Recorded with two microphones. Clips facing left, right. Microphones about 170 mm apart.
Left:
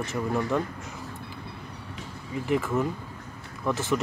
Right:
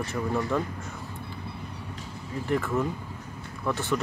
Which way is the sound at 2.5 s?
Centre (ahead or behind).